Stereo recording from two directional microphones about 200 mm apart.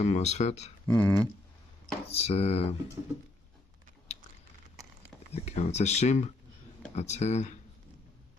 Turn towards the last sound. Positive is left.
turn(degrees=35)  # may be behind; listen again after turning